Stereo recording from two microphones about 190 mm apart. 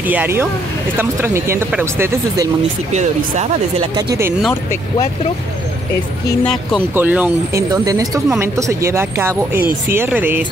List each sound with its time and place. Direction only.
0.0 s speech: 10° right (ahead or behind)
2.9 s speech: 35° right (ahead or behind)
3.9 s speech: 20° right (ahead or behind)
6.4 s speech: centre (ahead or behind)
7.7 s speech: 20° right (ahead or behind)